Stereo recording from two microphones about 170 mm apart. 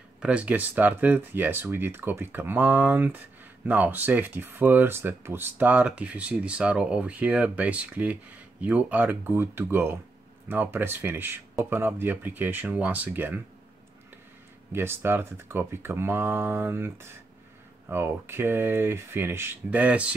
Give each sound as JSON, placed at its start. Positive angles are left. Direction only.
{"t": 0.2, "sound": "speech", "side_deg": -5}
{"t": 14.7, "sound": "speech", "side_deg": -15}